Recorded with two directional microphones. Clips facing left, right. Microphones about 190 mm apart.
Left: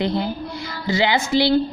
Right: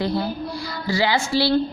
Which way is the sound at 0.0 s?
20° left (ahead or behind).